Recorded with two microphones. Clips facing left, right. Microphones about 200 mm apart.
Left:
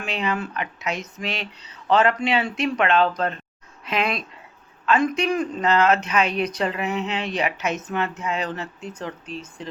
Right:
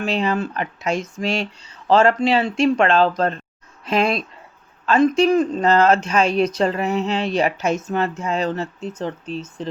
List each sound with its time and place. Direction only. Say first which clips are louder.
0.0 s speech: right 5 dB; 30° right (ahead or behind)